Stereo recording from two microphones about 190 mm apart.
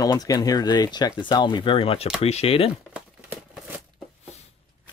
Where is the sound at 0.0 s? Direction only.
20° left (ahead or behind).